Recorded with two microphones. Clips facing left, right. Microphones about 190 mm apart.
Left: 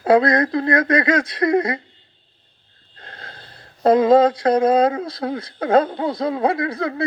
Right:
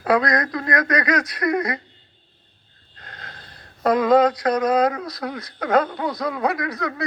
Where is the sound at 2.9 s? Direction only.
30° left (ahead or behind).